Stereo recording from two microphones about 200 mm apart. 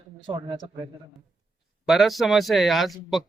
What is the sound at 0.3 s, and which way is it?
Speech, 25° right (ahead or behind).